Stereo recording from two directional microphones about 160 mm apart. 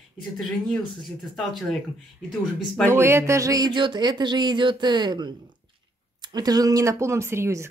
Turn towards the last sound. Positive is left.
turn(degrees=-15)  # may be behind; listen again after turning